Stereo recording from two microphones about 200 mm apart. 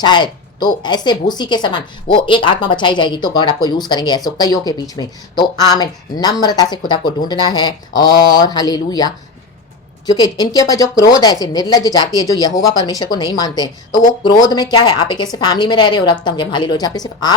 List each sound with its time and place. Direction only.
0.0 s a woman's voice: 20° left (ahead or behind)